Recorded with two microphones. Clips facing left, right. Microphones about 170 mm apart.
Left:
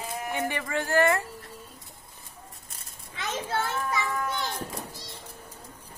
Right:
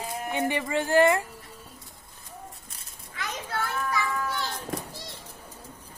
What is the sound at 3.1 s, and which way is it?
Children playing, 25° left (ahead or behind).